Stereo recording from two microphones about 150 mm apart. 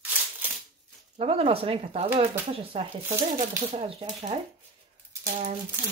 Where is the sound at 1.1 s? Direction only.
40° right (ahead or behind).